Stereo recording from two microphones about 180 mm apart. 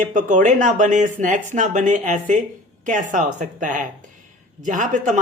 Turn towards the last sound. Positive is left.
turn(degrees=-45)  # may be behind; listen again after turning